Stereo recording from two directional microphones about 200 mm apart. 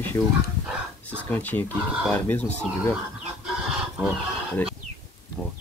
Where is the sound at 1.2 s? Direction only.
10° left (ahead or behind).